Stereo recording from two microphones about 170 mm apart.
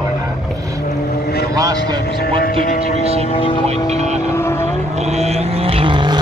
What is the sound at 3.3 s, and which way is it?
Speech, 30° left (ahead or behind).